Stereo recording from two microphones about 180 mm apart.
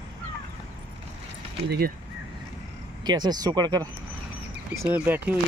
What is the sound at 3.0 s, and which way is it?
Speech, 25° right (ahead or behind).